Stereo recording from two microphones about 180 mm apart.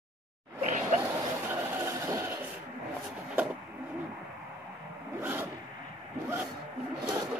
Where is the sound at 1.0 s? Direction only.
15° right (ahead or behind).